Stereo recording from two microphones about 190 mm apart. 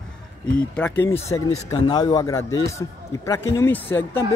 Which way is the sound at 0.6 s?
5° left (ahead or behind).